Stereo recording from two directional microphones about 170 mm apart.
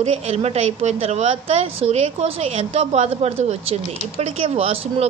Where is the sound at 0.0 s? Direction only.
35° right (ahead or behind).